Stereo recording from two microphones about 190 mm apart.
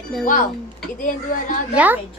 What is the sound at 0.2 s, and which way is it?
A woman's voice, 40° left (ahead or behind).